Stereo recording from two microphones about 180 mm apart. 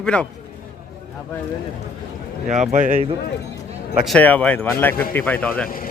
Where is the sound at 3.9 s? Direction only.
5° right (ahead or behind).